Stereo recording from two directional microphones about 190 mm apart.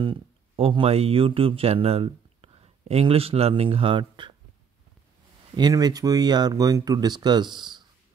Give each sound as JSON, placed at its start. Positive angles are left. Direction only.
{"t": 0.0, "sound": "speech", "side_deg": -30}
{"t": 5.6, "sound": "speech", "side_deg": -20}